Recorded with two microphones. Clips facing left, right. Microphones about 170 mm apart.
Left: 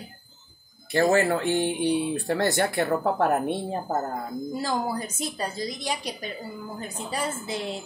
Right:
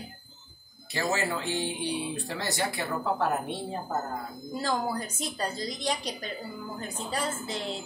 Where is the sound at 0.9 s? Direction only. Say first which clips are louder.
Left 9 dB; 55° left (ahead or behind).